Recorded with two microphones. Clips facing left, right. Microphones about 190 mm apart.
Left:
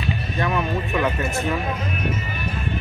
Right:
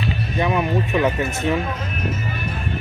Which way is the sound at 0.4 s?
15° right (ahead or behind).